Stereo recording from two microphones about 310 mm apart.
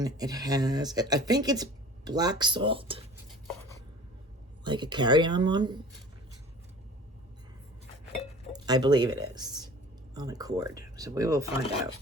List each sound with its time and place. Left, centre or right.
0.0 s speech: centre
3.4 s chopping: centre
4.6 s speech: centre
8.5 s speech: centre